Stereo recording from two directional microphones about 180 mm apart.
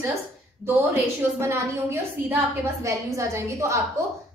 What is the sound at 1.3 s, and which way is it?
A woman's voice, 15° right (ahead or behind).